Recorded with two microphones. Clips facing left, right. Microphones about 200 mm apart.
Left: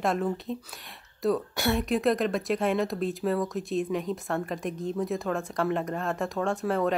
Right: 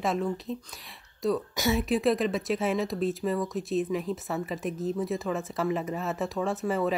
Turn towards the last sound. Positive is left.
turn(degrees=-5)  # may be behind; listen again after turning